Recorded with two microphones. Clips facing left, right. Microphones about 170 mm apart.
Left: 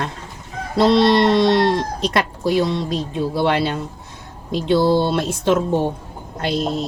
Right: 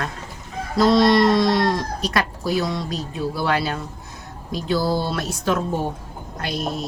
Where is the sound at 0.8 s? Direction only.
30° left (ahead or behind).